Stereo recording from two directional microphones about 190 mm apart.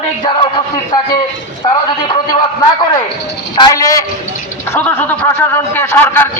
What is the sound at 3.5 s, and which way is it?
A man's voice, 20° left (ahead or behind).